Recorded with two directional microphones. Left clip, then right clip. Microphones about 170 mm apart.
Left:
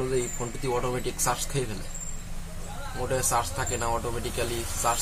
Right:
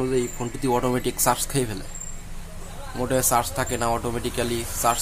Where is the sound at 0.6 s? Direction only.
55° right (ahead or behind).